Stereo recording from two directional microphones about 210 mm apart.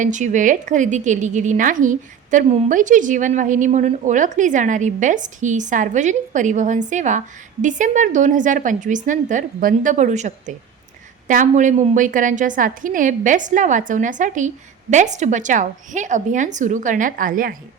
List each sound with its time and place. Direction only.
0.0 s a woman's voice: 35° right (ahead or behind)